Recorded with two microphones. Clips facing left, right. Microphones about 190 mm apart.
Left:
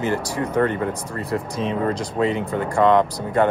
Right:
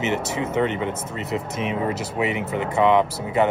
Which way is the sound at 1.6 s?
10° right (ahead or behind).